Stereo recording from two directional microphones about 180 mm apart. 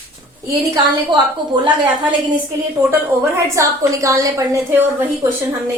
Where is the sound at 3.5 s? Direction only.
15° right (ahead or behind).